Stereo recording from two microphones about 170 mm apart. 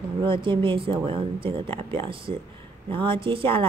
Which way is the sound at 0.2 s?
30° right (ahead or behind).